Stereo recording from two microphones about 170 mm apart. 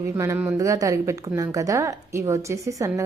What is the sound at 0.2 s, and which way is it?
Speech, 15° right (ahead or behind).